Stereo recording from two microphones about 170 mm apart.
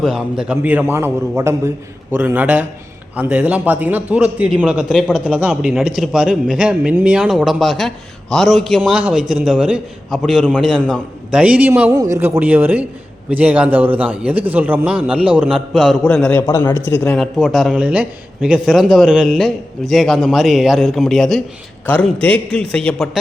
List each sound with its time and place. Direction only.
0.0 s a man's voice: 5° right (ahead or behind)
16.5 s a man's voice: 15° left (ahead or behind)
17.2 s a man's voice: centre (ahead or behind)